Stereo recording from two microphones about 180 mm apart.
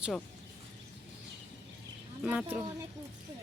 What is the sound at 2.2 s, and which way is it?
Speech, 5° right (ahead or behind).